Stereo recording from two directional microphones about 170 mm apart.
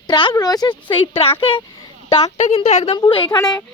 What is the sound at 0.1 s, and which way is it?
A woman's voice, 25° left (ahead or behind).